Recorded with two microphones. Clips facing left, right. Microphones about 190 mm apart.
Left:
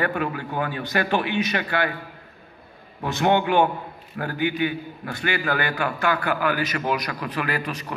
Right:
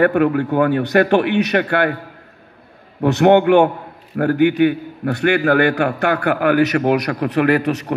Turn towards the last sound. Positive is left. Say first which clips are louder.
# right 12 dB
turn(degrees=-70)  # may be behind; listen again after turning